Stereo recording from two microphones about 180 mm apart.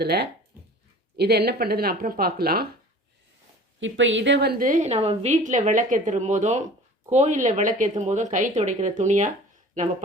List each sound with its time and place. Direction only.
0.0 s speech: 65° right (ahead or behind)
0.5 s dog: 10° right (ahead or behind)
1.1 s speech: 65° right (ahead or behind)
3.8 s a woman's voice: 90° right; by 9.9 s 45° right (ahead or behind)